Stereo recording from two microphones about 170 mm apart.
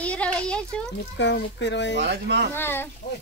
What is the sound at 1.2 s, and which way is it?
Speech, 90° left.